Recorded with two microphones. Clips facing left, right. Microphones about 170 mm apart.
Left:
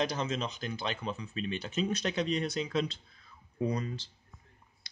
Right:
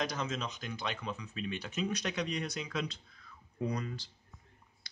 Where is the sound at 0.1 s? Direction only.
30° left (ahead or behind).